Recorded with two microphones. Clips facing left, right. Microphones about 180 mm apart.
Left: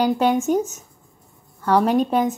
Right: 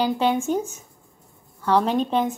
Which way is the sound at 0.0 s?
10° left (ahead or behind).